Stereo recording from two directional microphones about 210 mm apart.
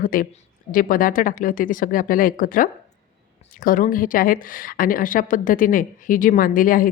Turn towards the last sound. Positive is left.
turn(degrees=40)  # may be behind; listen again after turning